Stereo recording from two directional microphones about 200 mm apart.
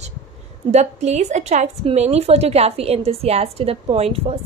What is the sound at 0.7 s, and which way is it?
A woman's voice, 35° right (ahead or behind).